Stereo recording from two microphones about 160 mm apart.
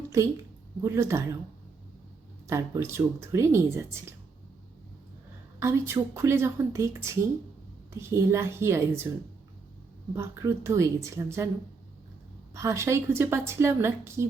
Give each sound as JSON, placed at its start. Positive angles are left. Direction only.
{"t": 0.8, "sound": "a woman's voice", "side_deg": -15}
{"t": 2.5, "sound": "a woman's voice", "side_deg": -20}
{"t": 5.5, "sound": "a woman's voice", "side_deg": -15}
{"t": 10.2, "sound": "a woman's voice", "side_deg": -15}
{"t": 12.5, "sound": "a woman's voice", "side_deg": -20}